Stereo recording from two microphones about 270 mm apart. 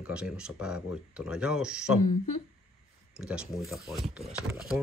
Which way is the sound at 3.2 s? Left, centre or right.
Centre.